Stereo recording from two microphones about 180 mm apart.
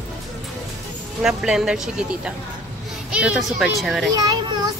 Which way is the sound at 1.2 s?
5° right (ahead or behind).